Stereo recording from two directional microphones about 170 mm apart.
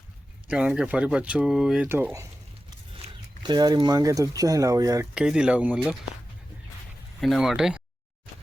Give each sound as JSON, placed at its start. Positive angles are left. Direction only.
{"t": 0.4, "sound": "speech", "side_deg": -5}
{"t": 3.4, "sound": "speech", "side_deg": -25}
{"t": 5.1, "sound": "speech", "side_deg": -5}
{"t": 7.2, "sound": "speech", "side_deg": 0}